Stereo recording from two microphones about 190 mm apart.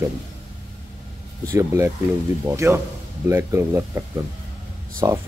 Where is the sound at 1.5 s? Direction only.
15° right (ahead or behind).